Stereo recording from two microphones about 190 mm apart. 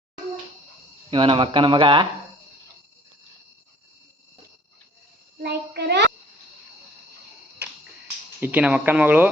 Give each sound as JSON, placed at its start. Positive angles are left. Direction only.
{"t": 1.1, "sound": "speech", "side_deg": -25}
{"t": 5.4, "sound": "child singing", "side_deg": -60}
{"t": 7.6, "sound": "finger snapping", "side_deg": -10}
{"t": 8.4, "sound": "speech", "side_deg": -10}